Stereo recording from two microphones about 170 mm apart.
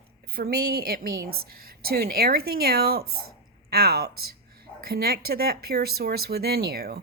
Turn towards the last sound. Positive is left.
turn(degrees=-65)  # may be behind; listen again after turning